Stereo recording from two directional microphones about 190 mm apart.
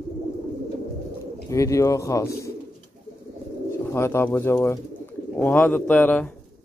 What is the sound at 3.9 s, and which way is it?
A man's voice, 15° left (ahead or behind).